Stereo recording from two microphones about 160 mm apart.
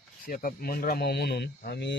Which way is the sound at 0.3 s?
60° left (ahead or behind).